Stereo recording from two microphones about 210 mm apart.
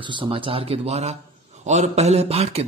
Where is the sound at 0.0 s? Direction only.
25° right (ahead or behind).